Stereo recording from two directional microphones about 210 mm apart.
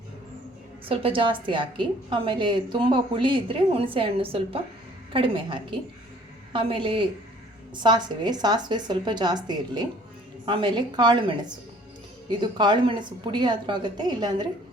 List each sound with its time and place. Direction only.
0.9 s a woman's voice: 25° right (ahead or behind)